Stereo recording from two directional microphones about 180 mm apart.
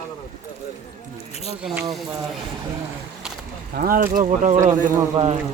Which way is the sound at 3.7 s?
55° right (ahead or behind).